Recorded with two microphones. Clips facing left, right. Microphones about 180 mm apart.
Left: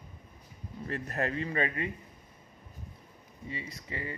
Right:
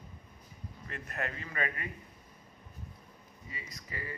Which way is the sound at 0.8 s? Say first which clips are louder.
Left 6 dB; 35° left (ahead or behind).